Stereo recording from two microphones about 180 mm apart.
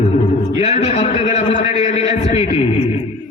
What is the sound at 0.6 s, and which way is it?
A man's voice, 35° left (ahead or behind).